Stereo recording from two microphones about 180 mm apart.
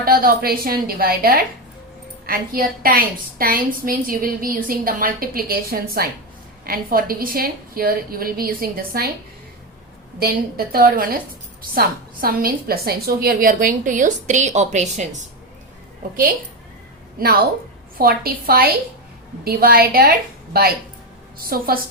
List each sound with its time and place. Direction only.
0.0 s a woman's voice: 55° right (ahead or behind)
10.2 s a woman's voice: 55° right (ahead or behind); by 15.0 s 40° right (ahead or behind)
17.2 s a woman's voice: 55° right (ahead or behind)